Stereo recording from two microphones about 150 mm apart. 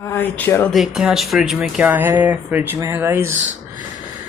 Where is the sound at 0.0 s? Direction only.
15° left (ahead or behind).